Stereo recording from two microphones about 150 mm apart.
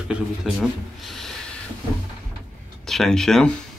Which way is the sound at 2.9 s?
5° left (ahead or behind).